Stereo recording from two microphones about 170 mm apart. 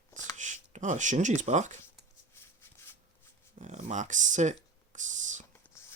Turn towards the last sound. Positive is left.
turn(degrees=-45)  # may be behind; listen again after turning